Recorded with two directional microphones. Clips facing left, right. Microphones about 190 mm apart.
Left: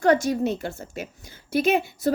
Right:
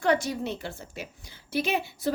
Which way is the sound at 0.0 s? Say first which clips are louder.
Left 6 dB; 45° left (ahead or behind).